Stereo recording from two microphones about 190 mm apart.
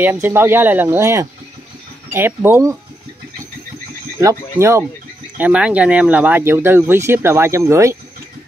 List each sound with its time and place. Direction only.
0.0 s speech: 10° right (ahead or behind)
4.2 s speech: 15° right (ahead or behind)